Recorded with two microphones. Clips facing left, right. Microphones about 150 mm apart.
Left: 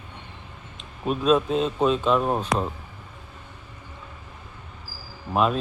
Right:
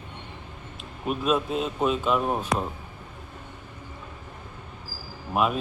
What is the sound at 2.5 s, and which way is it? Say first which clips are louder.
Speech: left 1 dB; 90° left.